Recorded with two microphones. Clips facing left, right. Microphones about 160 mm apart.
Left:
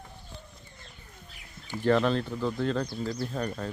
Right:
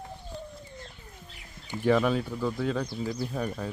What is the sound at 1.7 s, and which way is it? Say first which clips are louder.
Speech: even; 10° right (ahead or behind).